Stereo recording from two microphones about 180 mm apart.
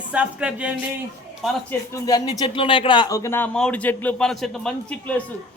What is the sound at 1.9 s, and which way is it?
Speech, 20° left (ahead or behind).